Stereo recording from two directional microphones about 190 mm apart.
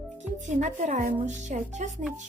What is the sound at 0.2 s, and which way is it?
Speech, 40° right (ahead or behind).